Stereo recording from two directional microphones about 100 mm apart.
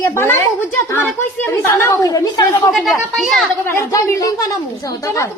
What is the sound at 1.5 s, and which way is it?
Speech, 35° left (ahead or behind).